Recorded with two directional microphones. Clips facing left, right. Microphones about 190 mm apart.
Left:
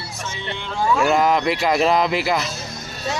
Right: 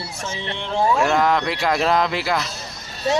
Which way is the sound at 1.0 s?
5° left (ahead or behind).